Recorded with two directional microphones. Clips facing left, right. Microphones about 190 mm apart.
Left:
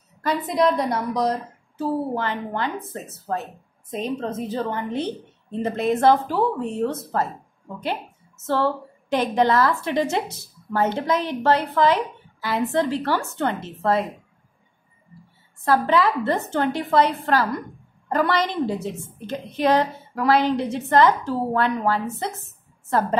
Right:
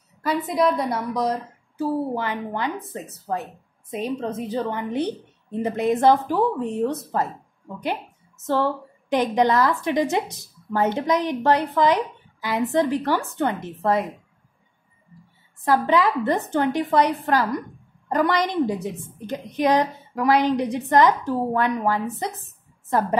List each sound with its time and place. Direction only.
0.2 s a woman's voice: 5° right (ahead or behind)
15.6 s speech: 15° right (ahead or behind)